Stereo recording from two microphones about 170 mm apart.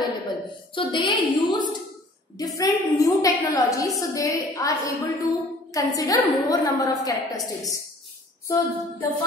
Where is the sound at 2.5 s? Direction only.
20° left (ahead or behind).